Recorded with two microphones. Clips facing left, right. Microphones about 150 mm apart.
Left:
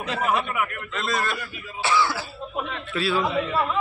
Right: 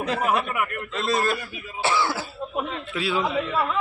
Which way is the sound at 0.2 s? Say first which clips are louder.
Left 2 dB; 5° right (ahead or behind).